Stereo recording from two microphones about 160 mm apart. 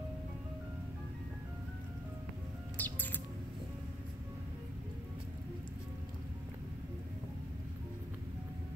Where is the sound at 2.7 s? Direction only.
10° left (ahead or behind).